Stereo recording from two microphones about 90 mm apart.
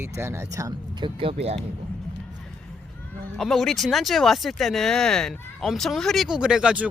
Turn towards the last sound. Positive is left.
turn(degrees=-10)  # may be behind; listen again after turning